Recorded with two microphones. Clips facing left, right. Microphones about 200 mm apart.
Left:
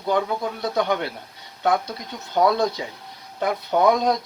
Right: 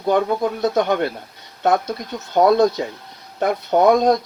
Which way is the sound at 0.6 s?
50° right (ahead or behind).